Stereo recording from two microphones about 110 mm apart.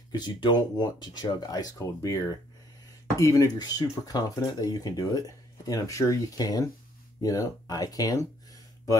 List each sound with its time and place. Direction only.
0.1 s speech: 40° left (ahead or behind)